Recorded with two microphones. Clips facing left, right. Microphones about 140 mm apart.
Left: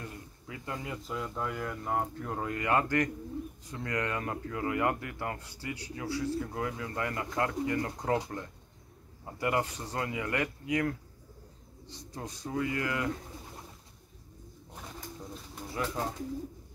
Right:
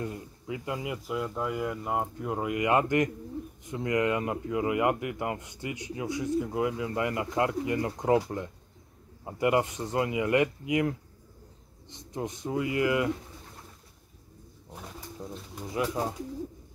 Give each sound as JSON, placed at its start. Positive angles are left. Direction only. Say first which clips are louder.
{"t": 0.0, "sound": "speech", "louder": "right 8 dB", "side_deg": -20}
{"t": 9.2, "sound": "speech", "louder": "right 5 dB", "side_deg": -20}
{"t": 15.0, "sound": "pigeon", "louder": "right 3 dB", "side_deg": -5}
{"t": 15.6, "sound": "speech", "louder": "right 4 dB", "side_deg": -15}